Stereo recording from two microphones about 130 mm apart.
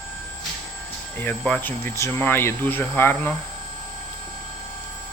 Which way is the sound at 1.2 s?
10° left (ahead or behind).